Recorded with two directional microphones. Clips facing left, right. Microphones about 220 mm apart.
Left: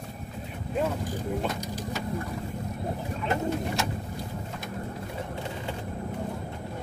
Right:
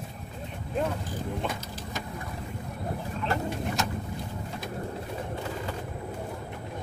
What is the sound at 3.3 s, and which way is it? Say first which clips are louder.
Bird: left 2 dB; 20° left (ahead or behind).